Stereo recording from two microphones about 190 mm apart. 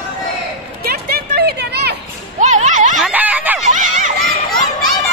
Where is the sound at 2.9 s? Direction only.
5° right (ahead or behind).